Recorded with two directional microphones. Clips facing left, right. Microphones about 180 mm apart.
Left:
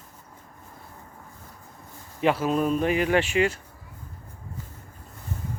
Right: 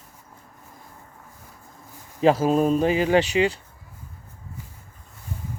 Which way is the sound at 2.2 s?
40° right (ahead or behind).